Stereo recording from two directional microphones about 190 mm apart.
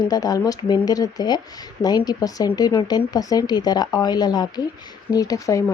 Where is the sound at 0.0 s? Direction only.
20° left (ahead or behind).